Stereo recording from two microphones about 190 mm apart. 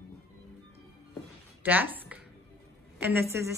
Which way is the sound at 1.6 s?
10° right (ahead or behind).